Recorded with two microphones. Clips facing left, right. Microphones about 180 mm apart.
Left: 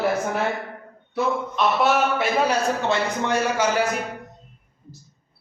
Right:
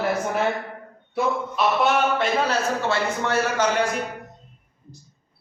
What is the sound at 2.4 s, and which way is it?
A man's voice, 15° left (ahead or behind).